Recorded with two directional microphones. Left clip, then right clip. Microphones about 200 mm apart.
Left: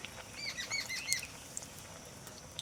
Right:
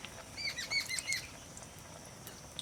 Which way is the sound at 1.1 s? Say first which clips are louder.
Left 1 dB; 10° left (ahead or behind).